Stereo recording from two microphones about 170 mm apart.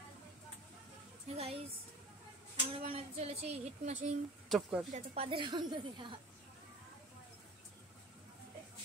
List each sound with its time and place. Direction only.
1.3 s a sound: 35° right (ahead or behind)
2.7 s speech: 35° right (ahead or behind)
4.5 s speech: 5° right (ahead or behind)
4.9 s a woman's voice: 35° right (ahead or behind)